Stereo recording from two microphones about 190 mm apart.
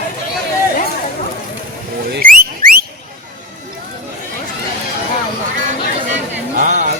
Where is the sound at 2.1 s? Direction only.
50° right (ahead or behind).